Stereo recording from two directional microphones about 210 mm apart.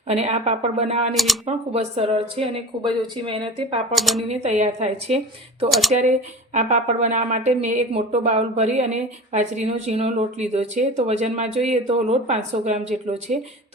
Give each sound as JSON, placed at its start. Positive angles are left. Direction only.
{"t": 0.1, "sound": "speech", "side_deg": -30}
{"t": 1.1, "sound": "speech", "side_deg": 0}
{"t": 1.5, "sound": "speech", "side_deg": -30}
{"t": 3.9, "sound": "speech", "side_deg": 0}
{"t": 4.3, "sound": "speech", "side_deg": -30}